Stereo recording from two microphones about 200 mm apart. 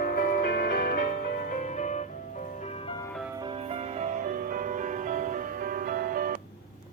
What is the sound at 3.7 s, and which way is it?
Music, 35° right (ahead or behind).